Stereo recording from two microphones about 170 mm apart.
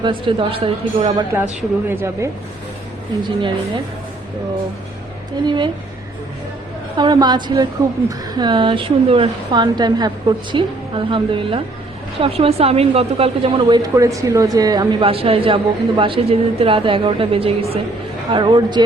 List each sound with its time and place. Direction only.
0.0 s a woman's voice: 30° right (ahead or behind)
1.3 s speech: 10° right (ahead or behind)
5.5 s a woman's voice: 25° right (ahead or behind)
6.9 s a woman's voice: 25° right (ahead or behind)